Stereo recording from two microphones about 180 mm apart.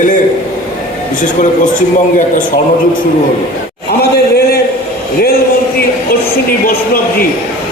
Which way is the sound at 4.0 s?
60° left (ahead or behind).